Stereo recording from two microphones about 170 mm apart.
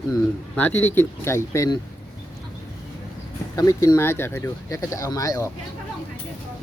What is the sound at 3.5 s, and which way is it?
Speech, 20° left (ahead or behind).